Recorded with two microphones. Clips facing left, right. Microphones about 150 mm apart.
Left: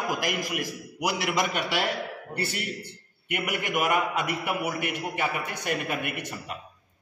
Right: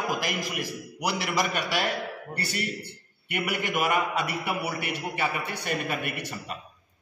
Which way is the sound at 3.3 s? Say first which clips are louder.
Even; 15° left (ahead or behind).